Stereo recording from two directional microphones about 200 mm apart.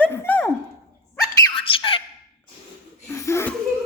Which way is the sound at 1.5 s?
25° left (ahead or behind).